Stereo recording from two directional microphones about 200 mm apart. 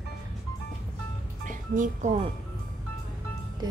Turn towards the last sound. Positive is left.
turn(degrees=-20)  # may be behind; listen again after turning